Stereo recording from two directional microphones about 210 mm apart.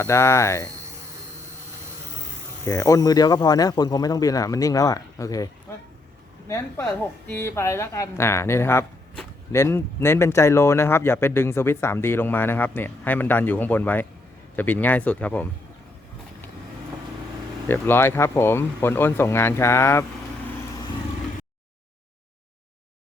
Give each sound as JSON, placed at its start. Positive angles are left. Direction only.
{"t": 0.0, "sound": "speech", "side_deg": 15}
{"t": 2.6, "sound": "speech", "side_deg": 15}
{"t": 6.5, "sound": "speech", "side_deg": 15}
{"t": 17.7, "sound": "speech", "side_deg": 10}